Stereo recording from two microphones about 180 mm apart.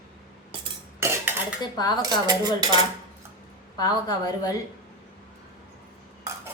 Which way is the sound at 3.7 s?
20° left (ahead or behind).